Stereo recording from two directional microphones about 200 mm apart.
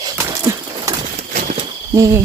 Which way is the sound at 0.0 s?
15° right (ahead or behind).